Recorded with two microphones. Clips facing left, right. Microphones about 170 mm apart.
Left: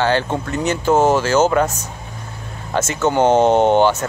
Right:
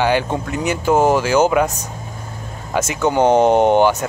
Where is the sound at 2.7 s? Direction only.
10° right (ahead or behind).